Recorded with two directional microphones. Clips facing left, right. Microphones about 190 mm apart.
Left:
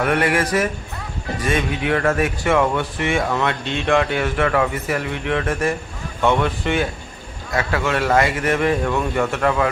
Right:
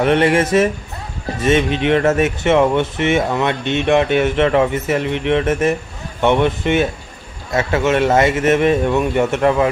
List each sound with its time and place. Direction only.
0.0 s speech: 25° right (ahead or behind)